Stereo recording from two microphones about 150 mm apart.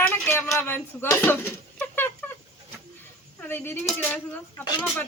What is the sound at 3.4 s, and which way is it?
A woman's voice, 15° left (ahead or behind).